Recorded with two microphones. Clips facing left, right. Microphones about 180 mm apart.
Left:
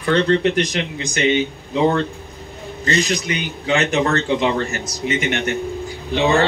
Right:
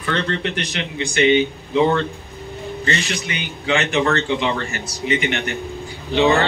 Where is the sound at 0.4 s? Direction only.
40° left (ahead or behind).